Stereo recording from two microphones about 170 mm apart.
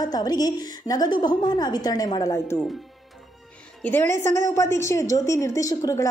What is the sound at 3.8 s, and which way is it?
A woman's voice, 10° left (ahead or behind).